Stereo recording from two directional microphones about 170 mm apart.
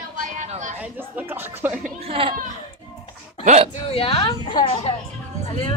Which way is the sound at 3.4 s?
45° right (ahead or behind).